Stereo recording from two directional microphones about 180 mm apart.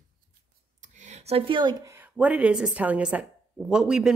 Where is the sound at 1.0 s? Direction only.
40° right (ahead or behind); by 2.0 s 20° right (ahead or behind).